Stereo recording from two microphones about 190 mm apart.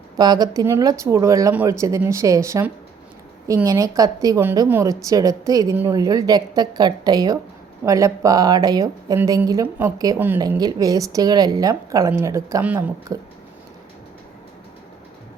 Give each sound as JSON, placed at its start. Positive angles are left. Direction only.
{"t": 0.2, "sound": "a woman's voice", "side_deg": -20}